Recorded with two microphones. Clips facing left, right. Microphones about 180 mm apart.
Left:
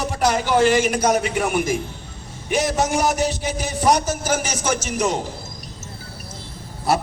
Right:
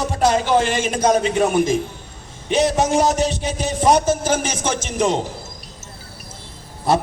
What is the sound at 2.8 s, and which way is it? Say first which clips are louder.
A man's voice: right 3 dB; 25° right (ahead or behind).